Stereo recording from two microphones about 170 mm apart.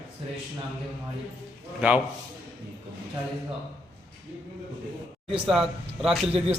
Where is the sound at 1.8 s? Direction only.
5° right (ahead or behind).